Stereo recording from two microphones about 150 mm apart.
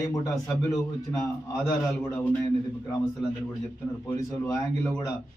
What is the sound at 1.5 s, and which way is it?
Speech, 5° left (ahead or behind).